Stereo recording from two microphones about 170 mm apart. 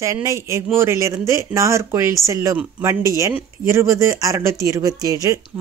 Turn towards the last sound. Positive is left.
turn(degrees=-20)  # may be behind; listen again after turning